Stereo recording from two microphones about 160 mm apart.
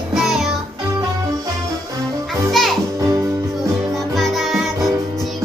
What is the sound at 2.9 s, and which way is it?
Music, 20° right (ahead or behind).